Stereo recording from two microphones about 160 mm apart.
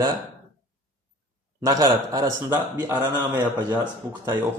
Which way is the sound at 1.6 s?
25° right (ahead or behind).